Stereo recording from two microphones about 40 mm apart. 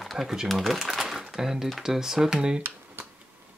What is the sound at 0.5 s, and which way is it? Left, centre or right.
Speech, centre.